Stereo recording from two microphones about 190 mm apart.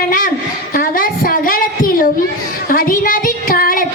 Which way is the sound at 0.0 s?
45° left (ahead or behind).